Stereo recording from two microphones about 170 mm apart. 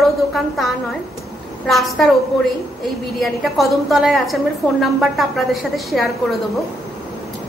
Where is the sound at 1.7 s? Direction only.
Centre (ahead or behind).